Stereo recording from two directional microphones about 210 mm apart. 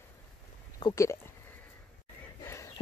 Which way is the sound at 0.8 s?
15° left (ahead or behind).